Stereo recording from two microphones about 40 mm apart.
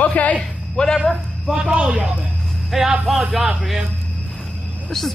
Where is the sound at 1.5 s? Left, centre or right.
Right.